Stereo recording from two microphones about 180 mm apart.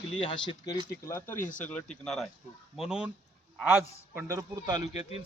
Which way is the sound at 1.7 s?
5° left (ahead or behind).